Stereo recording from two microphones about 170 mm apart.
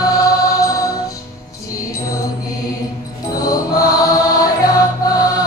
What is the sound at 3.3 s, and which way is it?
Mantra, 20° left (ahead or behind).